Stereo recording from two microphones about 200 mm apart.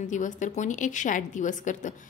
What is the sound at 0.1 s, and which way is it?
A woman's voice, 40° left (ahead or behind).